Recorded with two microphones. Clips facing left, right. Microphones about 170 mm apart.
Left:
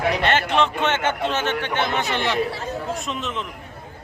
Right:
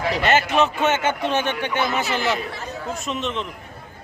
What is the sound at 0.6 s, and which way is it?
Speech, 5° right (ahead or behind).